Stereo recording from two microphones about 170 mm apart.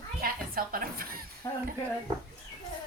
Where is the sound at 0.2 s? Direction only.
60° right (ahead or behind).